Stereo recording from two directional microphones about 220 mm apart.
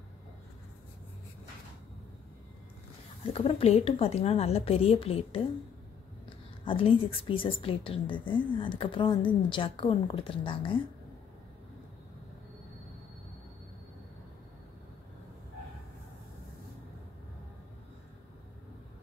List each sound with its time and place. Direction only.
3.3 s a woman's voice: 25° left (ahead or behind)